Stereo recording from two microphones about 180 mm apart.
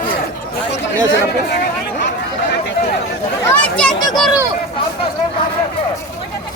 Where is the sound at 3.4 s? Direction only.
10° left (ahead or behind).